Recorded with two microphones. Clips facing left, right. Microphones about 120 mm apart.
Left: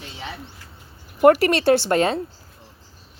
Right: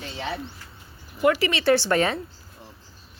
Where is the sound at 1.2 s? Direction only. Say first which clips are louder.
Left 7 dB; 50° left (ahead or behind).